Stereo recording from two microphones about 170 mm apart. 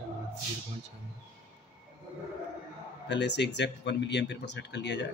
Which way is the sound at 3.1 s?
90° left.